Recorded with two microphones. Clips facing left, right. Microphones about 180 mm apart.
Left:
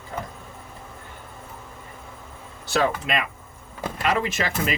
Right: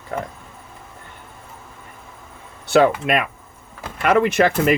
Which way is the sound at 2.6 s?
60° right (ahead or behind).